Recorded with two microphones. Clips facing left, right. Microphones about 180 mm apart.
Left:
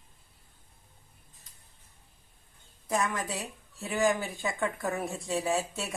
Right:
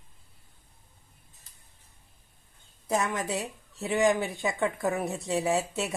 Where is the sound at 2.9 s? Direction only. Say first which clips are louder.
Right 2 dB; 25° right (ahead or behind).